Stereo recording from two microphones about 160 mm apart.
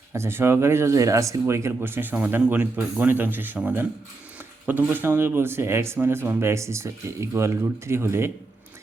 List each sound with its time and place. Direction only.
0.1 s speech: 15° right (ahead or behind)